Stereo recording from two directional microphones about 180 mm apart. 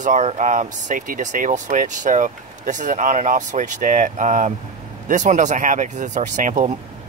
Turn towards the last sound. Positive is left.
turn(degrees=-45)  # may be behind; listen again after turning